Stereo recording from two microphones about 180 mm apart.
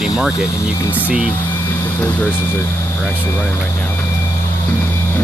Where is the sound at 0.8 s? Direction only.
10° left (ahead or behind).